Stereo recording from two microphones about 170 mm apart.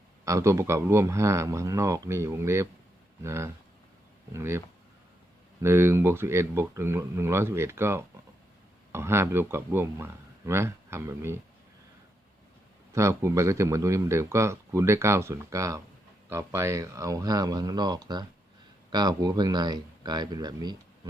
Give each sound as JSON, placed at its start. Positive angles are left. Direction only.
{"t": 0.3, "sound": "a man's voice", "side_deg": -15}
{"t": 5.6, "sound": "a man's voice", "side_deg": -15}
{"t": 12.9, "sound": "a man's voice", "side_deg": -15}